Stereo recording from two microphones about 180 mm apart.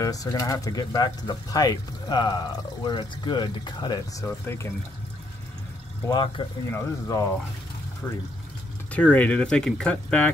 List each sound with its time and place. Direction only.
0.0 s speech: 20° left (ahead or behind)
6.0 s speech: 25° left (ahead or behind)
8.9 s speech: 5° left (ahead or behind)